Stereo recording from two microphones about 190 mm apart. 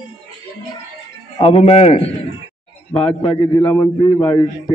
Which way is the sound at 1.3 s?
30° left (ahead or behind).